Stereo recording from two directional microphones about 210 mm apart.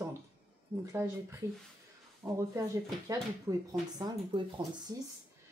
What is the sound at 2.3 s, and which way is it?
Speech, 15° right (ahead or behind).